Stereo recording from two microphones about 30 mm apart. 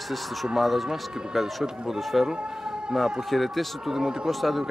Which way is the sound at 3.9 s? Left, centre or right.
Right.